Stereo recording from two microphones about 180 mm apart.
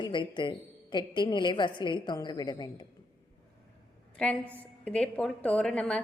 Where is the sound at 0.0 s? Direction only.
25° left (ahead or behind).